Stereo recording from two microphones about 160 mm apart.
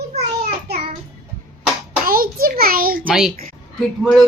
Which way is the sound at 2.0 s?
65° right (ahead or behind).